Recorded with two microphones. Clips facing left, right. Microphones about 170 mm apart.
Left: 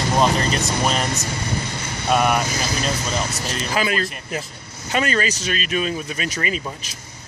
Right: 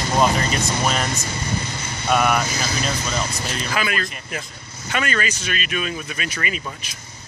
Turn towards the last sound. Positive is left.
turn(degrees=35)  # may be behind; listen again after turning